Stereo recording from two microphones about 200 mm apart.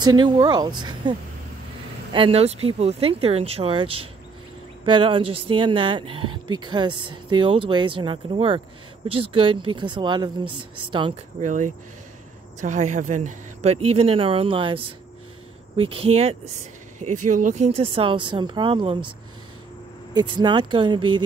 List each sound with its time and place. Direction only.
0.0 s speech: 20° right (ahead or behind)
2.1 s speech: 30° right (ahead or behind)
11.4 s speech: 40° right (ahead or behind)
20.2 s speech: 20° right (ahead or behind)